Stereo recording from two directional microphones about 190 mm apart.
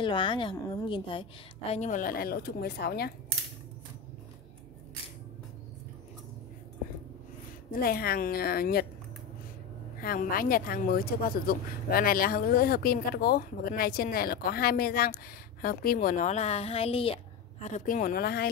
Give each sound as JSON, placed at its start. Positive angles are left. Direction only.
{"t": 0.0, "sound": "a woman's voice", "side_deg": 25}
{"t": 1.7, "sound": "speech", "side_deg": 40}
{"t": 7.7, "sound": "speech", "side_deg": 55}
{"t": 9.9, "sound": "a woman's voice", "side_deg": 50}